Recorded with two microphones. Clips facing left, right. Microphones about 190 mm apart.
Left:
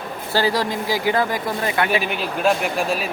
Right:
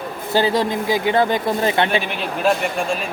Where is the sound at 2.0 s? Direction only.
Centre (ahead or behind).